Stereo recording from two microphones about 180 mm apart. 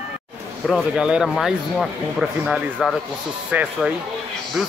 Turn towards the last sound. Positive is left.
turn(degrees=-5)  # may be behind; listen again after turning